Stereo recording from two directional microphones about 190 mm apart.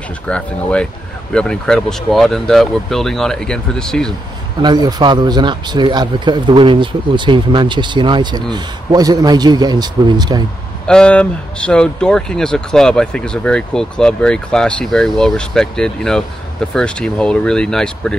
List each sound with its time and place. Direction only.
0.3 s speech: 5° left (ahead or behind)
4.6 s speech: 20° right (ahead or behind)
10.9 s speech: 5° left (ahead or behind)